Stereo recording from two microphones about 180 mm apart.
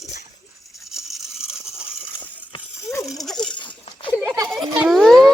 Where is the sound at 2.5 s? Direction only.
30° left (ahead or behind).